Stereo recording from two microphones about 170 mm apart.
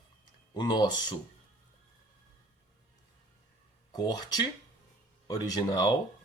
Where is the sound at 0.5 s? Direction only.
25° left (ahead or behind).